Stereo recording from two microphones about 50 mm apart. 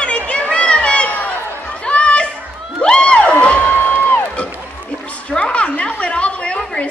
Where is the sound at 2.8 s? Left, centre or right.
Centre.